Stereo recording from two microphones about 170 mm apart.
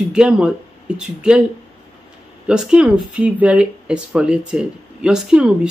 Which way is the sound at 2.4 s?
5° right (ahead or behind).